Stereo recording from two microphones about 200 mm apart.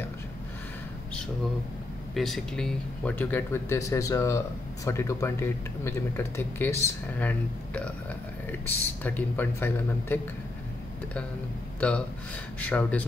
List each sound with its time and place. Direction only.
2.1 s speech: centre (ahead or behind)
11.8 s speech: 5° left (ahead or behind)